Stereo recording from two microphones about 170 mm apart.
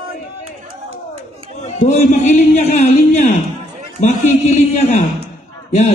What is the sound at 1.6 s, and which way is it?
A man's voice, 40° left (ahead or behind).